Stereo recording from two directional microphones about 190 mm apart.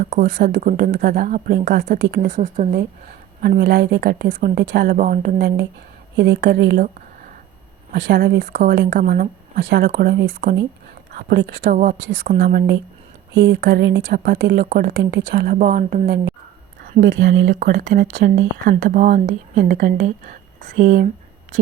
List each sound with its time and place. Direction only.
0.0 s speech: 45° right (ahead or behind); by 2.3 s 60° right (ahead or behind)
2.3 s a woman's voice: 40° right (ahead or behind)
2.7 s speech: 55° right (ahead or behind)
7.9 s speech: 65° right (ahead or behind)
8.5 s speech: 55° right (ahead or behind)
9.6 s speech: 65° right (ahead or behind)
11.1 s speech: 55° right (ahead or behind)
11.7 s speech: 45° right (ahead or behind)
12.4 s speech: 60° right (ahead or behind)
17.0 s speech: 70° right (ahead or behind)
18.8 s speech: 45° right (ahead or behind)